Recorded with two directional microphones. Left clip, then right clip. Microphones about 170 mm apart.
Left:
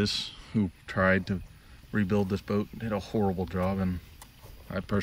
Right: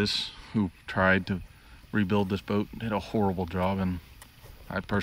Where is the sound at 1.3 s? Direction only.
40° left (ahead or behind).